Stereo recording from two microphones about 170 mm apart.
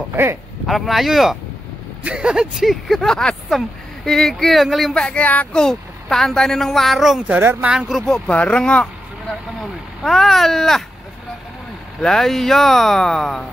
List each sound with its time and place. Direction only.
0.1 s speech: 15° right (ahead or behind)
0.7 s speech: centre (ahead or behind)
12.0 s speech: centre (ahead or behind)